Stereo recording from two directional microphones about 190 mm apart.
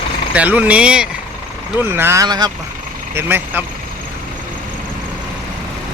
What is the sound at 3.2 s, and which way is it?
Speech, 10° right (ahead or behind).